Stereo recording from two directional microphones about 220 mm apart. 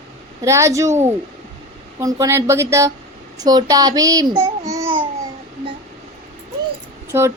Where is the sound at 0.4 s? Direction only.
15° right (ahead or behind).